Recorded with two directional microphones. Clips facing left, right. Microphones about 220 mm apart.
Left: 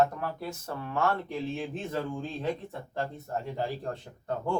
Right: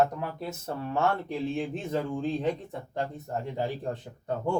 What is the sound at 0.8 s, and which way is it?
Speech, 25° right (ahead or behind).